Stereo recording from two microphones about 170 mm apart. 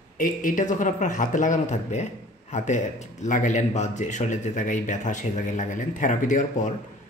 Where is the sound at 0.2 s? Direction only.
55° left (ahead or behind).